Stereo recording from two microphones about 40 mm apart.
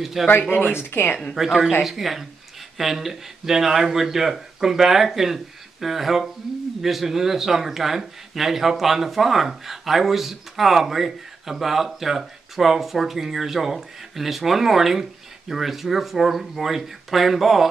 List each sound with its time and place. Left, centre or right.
0.0 s speech: centre
0.3 s speech: left
0.7 s speech: left
1.3 s speech: centre